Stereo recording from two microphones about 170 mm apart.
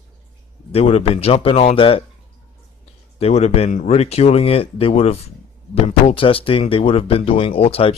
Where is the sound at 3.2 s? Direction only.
40° left (ahead or behind).